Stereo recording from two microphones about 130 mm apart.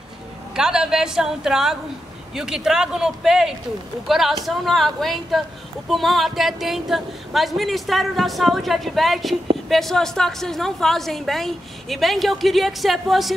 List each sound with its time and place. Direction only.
0.6 s a woman's voice: 5° right (ahead or behind)